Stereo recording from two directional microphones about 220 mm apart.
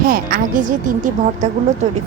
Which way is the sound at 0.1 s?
40° right (ahead or behind).